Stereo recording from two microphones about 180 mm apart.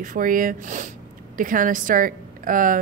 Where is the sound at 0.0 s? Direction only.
50° right (ahead or behind).